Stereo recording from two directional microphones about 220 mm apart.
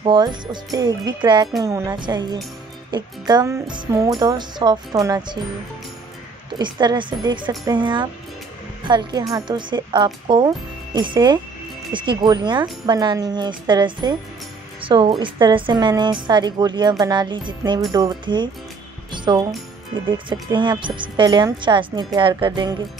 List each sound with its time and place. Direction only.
0.0 s a woman's voice: 20° right (ahead or behind)
6.6 s a woman's voice: 20° right (ahead or behind)
19.1 s music: 20° right (ahead or behind)
20.1 s a woman's voice: 20° right (ahead or behind)